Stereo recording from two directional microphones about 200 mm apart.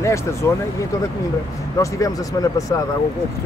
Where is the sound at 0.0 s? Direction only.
15° left (ahead or behind).